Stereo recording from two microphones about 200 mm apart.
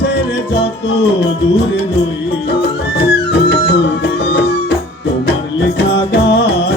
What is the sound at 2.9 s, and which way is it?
Music, 55° left (ahead or behind).